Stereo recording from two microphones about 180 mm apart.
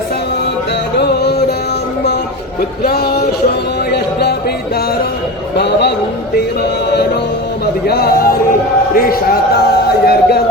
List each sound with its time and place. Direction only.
0.9 s music: 65° left (ahead or behind)
2.8 s a man's voice: 60° left (ahead or behind)
3.9 s music: 65° left (ahead or behind)
5.5 s a man's voice: 70° left (ahead or behind)
7.9 s a man's voice: 60° left (ahead or behind)